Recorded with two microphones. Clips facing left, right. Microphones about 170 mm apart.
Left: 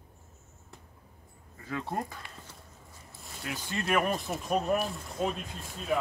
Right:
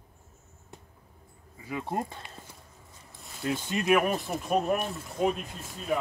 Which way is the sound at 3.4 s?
25° right (ahead or behind).